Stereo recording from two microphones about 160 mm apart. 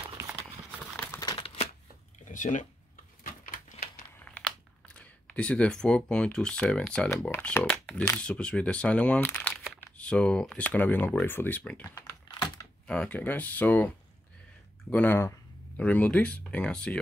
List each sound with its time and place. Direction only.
0.7 s horse: 10° left (ahead or behind)
1.2 s crumpling: 30° left (ahead or behind)
2.2 s a sound: 50° left (ahead or behind)
4.2 s a sound: 5° left (ahead or behind)
7.1 s speech: 15° left (ahead or behind)
12.4 s typing: 25° left (ahead or behind)
12.8 s speech: 5° left (ahead or behind)